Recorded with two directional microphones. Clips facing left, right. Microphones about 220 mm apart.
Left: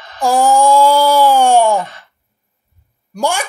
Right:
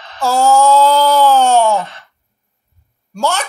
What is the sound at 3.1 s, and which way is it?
Speech, 15° left (ahead or behind).